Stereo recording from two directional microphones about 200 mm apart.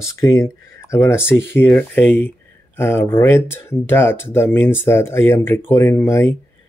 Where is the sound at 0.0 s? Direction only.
15° left (ahead or behind).